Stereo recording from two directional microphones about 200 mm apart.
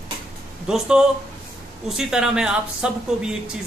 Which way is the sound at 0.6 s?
5° right (ahead or behind).